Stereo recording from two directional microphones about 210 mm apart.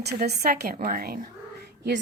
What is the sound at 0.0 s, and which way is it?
A woman's voice, 50° right (ahead or behind).